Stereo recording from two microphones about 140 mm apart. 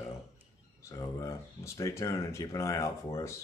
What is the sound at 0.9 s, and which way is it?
Speech, 20° left (ahead or behind).